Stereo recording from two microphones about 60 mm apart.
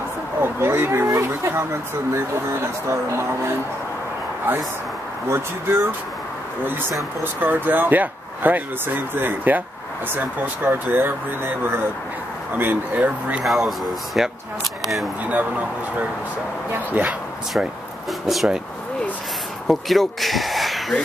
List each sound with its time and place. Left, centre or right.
0.4 s speech: right
1.0 s speech: right
5.3 s speech: right
7.3 s speech: right
13.4 s speech: centre
15.2 s speech: right
18.2 s speech: centre
19.7 s speech: centre